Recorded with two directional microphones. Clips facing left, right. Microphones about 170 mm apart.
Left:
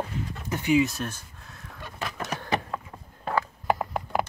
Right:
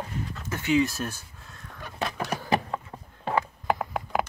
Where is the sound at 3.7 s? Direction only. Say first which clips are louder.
Left 1 dB; centre (ahead or behind).